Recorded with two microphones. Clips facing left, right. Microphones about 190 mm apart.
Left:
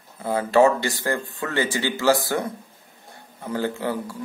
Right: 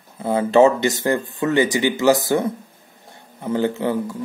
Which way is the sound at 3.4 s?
20° right (ahead or behind).